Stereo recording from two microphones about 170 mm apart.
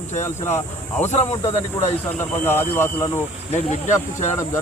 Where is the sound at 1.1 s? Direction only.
40° left (ahead or behind).